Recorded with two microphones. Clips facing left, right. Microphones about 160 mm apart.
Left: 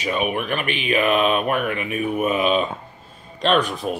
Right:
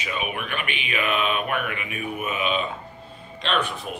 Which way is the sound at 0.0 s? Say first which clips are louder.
Left 7 dB; 40° left (ahead or behind).